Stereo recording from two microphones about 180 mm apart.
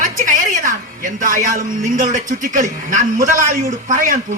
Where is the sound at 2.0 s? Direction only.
45° right (ahead or behind).